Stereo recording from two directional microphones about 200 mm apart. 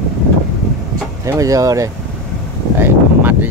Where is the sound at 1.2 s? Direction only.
15° right (ahead or behind).